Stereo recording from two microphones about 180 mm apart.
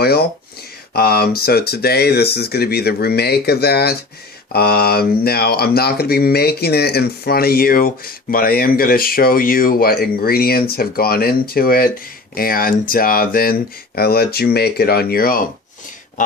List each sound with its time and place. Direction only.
0.0 s speech: 60° left (ahead or behind)